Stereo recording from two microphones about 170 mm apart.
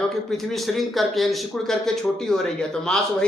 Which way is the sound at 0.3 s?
Centre (ahead or behind).